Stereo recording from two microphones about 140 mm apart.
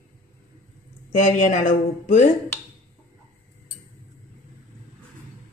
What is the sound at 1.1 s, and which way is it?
A woman's voice, 65° left (ahead or behind).